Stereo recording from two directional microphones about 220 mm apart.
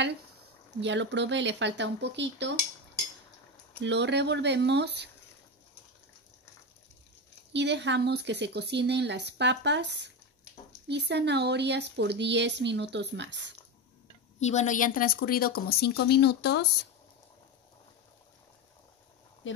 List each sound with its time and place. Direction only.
0.7 s a woman's voice: 55° right (ahead or behind)
3.8 s a woman's voice: 50° right (ahead or behind)
7.5 s a woman's voice: 50° right (ahead or behind)
14.4 s speech: 30° left (ahead or behind); by 16.6 s 50° left (ahead or behind)
19.4 s a sound: 60° left (ahead or behind)